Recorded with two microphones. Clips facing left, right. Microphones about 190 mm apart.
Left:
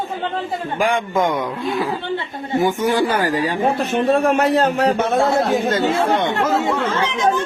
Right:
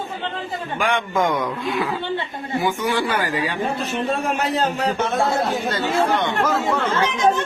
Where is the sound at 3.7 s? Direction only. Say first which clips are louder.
Left 6 dB; 60° left (ahead or behind).